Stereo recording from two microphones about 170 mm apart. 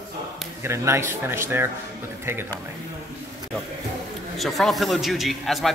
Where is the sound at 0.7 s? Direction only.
15° right (ahead or behind).